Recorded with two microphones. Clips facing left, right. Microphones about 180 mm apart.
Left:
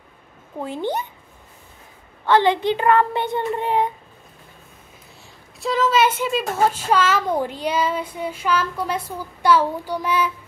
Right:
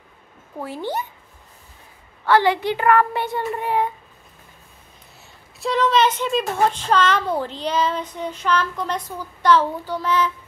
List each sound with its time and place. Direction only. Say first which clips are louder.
0.6 s a child's voice: left 2 dB; 20° left (ahead or behind)
2.2 s a child's voice: left 1 dB; 20° left (ahead or behind)
5.6 s a child's voice: even; centre (ahead or behind)